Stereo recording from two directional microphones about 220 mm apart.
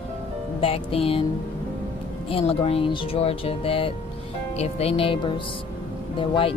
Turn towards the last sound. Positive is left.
turn(degrees=25)  # may be behind; listen again after turning